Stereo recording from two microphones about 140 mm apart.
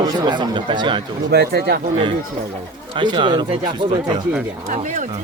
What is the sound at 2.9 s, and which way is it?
A man's voice, 35° right (ahead or behind).